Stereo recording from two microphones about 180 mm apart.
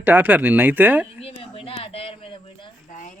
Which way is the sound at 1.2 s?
30° left (ahead or behind).